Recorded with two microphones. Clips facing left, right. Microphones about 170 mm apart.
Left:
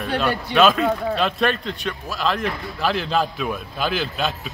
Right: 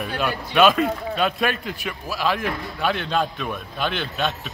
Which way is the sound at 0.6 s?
Centre (ahead or behind).